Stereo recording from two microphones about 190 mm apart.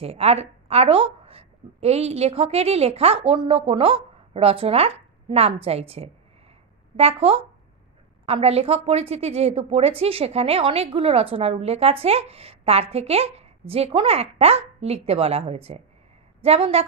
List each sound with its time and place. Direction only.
0.0 s a woman's voice: 30° right (ahead or behind)